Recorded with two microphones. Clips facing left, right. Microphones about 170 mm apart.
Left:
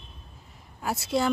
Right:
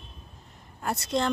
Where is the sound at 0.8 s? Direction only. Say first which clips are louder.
Left 1 dB; 5° left (ahead or behind).